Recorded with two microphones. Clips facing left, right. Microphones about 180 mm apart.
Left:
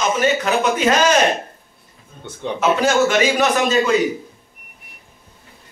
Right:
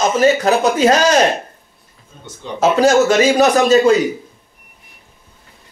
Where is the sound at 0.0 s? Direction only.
35° right (ahead or behind).